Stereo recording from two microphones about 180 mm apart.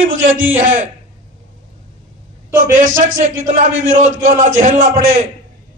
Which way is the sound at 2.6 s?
45° right (ahead or behind).